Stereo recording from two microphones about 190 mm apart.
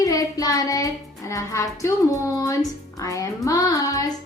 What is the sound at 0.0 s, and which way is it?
Child singing, 20° left (ahead or behind).